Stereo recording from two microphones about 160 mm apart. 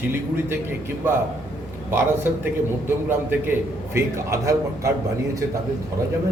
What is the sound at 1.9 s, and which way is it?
A man's voice, 15° right (ahead or behind).